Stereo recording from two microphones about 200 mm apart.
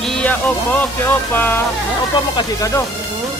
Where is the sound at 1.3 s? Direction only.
10° left (ahead or behind).